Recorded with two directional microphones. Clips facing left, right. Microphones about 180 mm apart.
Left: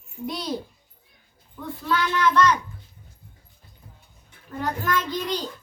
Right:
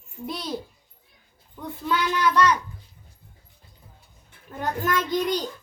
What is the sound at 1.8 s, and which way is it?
Child singing, 15° right (ahead or behind).